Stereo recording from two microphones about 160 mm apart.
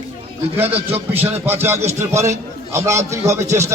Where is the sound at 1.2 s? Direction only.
15° right (ahead or behind).